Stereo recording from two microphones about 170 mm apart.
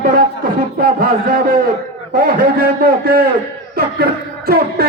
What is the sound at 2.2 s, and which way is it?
A man's voice, 60° right (ahead or behind).